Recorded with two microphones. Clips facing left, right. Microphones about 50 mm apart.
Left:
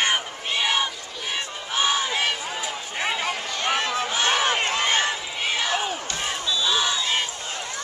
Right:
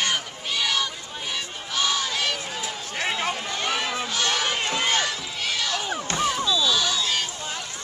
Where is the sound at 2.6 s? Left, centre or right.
Centre.